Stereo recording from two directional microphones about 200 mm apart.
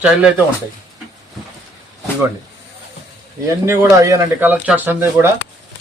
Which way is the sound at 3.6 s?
15° right (ahead or behind).